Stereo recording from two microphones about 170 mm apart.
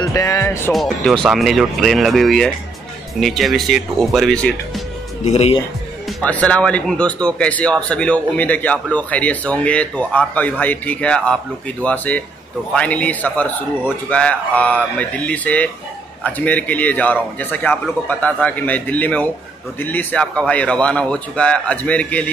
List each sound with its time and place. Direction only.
0.0 s music: 20° left (ahead or behind)
0.7 s speech: centre (ahead or behind)
5.2 s speech: 40° left (ahead or behind)
6.0 s speech: 10° left (ahead or behind)